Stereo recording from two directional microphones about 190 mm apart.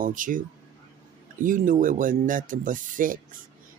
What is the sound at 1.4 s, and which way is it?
Speech, 45° right (ahead or behind).